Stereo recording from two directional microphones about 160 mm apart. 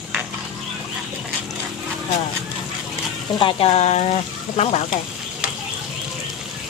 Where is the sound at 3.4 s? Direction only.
30° left (ahead or behind).